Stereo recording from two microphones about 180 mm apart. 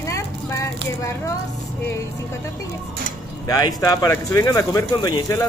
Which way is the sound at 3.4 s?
20° left (ahead or behind).